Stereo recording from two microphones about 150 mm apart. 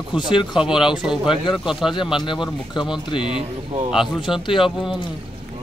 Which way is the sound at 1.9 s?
30° left (ahead or behind).